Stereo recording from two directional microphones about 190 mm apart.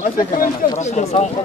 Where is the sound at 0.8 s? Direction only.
35° left (ahead or behind).